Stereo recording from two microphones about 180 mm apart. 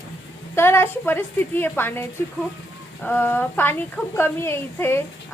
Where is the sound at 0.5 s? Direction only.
15° left (ahead or behind).